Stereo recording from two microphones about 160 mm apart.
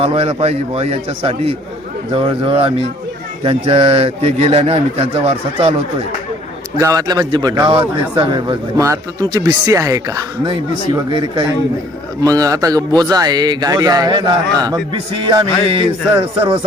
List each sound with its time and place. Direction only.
0.0 s a man's voice: 40° right (ahead or behind)
6.7 s a man's voice: 20° right (ahead or behind)